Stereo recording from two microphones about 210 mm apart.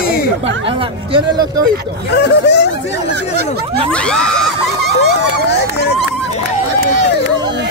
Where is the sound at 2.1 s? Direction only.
55° left (ahead or behind).